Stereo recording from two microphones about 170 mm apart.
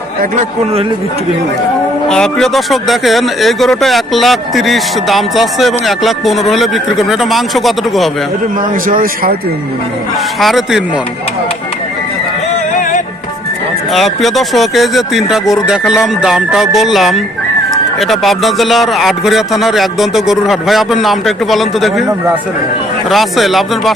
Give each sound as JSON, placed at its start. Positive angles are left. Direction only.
{"t": 2.0, "sound": "speech", "side_deg": 5}
{"t": 8.9, "sound": "speech", "side_deg": -55}
{"t": 10.4, "sound": "speech", "side_deg": 0}
{"t": 13.9, "sound": "speech", "side_deg": 0}
{"t": 23.0, "sound": "speech", "side_deg": 0}